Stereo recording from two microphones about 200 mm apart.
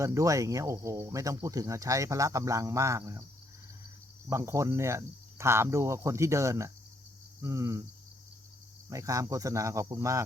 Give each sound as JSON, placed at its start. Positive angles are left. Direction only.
{"t": 0.0, "sound": "speech", "side_deg": -15}
{"t": 4.3, "sound": "speech", "side_deg": -15}
{"t": 8.9, "sound": "speech", "side_deg": -15}